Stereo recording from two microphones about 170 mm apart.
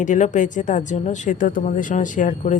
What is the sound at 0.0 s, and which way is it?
Speech, 50° left (ahead or behind).